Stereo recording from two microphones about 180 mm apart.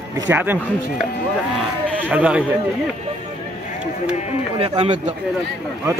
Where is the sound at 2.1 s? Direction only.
10° right (ahead or behind).